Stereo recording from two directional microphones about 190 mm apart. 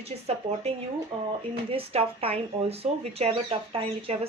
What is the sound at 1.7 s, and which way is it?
Speech, 30° right (ahead or behind).